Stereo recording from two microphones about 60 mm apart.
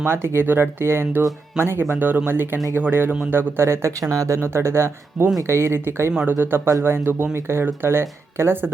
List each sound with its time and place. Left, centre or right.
0.0 s speech: right
4.1 s speech: right
4.4 s speech: right